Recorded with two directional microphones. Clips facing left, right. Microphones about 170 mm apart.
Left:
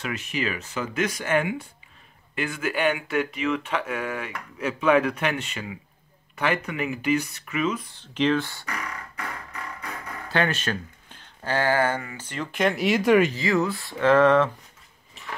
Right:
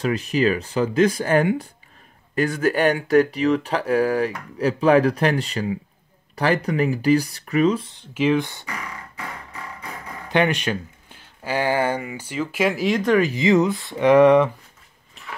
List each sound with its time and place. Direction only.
0.0 s speech: 35° right (ahead or behind)
7.9 s speech: 10° right (ahead or behind)
10.2 s speech: 15° right (ahead or behind); by 13.3 s 5° left (ahead or behind)
13.3 s speech: 20° right (ahead or behind)
15.2 s dog: centre (ahead or behind)